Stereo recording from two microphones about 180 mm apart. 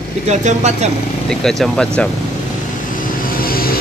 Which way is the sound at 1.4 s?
Centre (ahead or behind).